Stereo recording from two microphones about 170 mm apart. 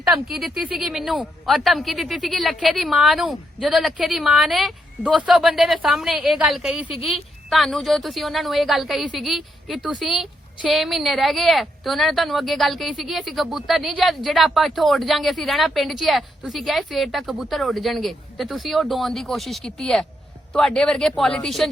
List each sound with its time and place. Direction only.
0.3 s a woman's voice: centre (ahead or behind)